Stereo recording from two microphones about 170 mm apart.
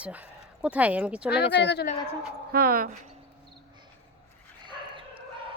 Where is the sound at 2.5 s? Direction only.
60° right (ahead or behind).